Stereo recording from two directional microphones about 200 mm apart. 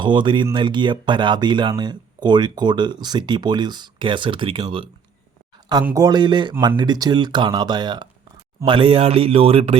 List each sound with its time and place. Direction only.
0.0 s speech: 25° right (ahead or behind)